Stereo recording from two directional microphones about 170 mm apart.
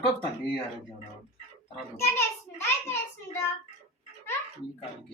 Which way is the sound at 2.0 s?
15° left (ahead or behind).